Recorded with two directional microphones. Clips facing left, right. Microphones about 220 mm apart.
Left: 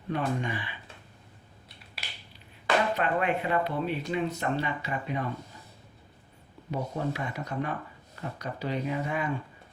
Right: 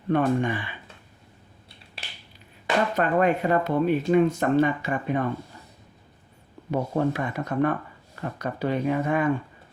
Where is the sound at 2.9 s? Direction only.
45° right (ahead or behind).